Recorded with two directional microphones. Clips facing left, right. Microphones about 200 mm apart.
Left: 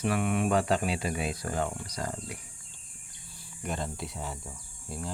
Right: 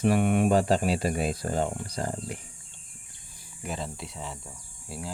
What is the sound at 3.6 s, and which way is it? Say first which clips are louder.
Speech: even; 5° right (ahead or behind).